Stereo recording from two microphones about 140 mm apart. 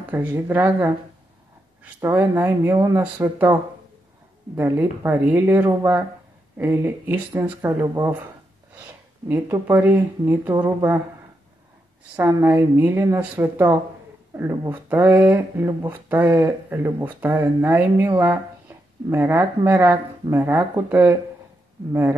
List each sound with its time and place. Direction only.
0.1 s speech: 10° right (ahead or behind)
4.6 s speech: 15° right (ahead or behind)
9.3 s speech: 15° right (ahead or behind)
12.2 s speech: 20° right (ahead or behind)